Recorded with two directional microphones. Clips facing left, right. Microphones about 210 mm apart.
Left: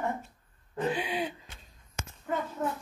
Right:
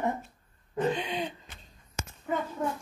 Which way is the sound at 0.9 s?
5° left (ahead or behind).